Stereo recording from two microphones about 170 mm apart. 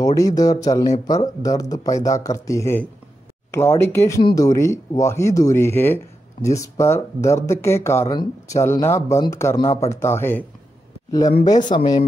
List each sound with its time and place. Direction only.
0.0 s speech: 20° left (ahead or behind)
4.2 s speech: 25° left (ahead or behind)
9.6 s speech: 35° left (ahead or behind)
9.8 s speech: 15° left (ahead or behind)